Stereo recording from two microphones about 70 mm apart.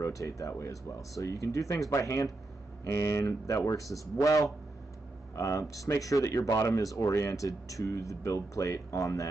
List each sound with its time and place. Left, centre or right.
0.0 s speech: left